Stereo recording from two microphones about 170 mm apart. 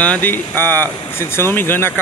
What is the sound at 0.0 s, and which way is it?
Speech, 10° left (ahead or behind).